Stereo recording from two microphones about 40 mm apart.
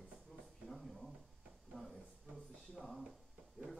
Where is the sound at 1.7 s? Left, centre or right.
Left.